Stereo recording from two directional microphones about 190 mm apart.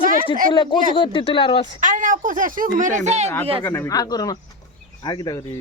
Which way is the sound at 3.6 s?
10° left (ahead or behind).